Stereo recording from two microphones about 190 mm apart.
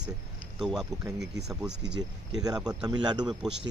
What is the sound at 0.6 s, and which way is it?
Speech, 5° right (ahead or behind).